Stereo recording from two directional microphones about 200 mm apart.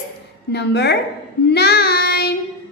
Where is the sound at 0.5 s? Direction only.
55° left (ahead or behind).